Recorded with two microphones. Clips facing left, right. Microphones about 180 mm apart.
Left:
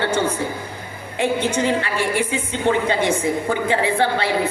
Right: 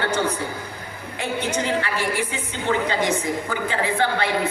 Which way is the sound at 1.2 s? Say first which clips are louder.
Left 5 dB; 25° left (ahead or behind).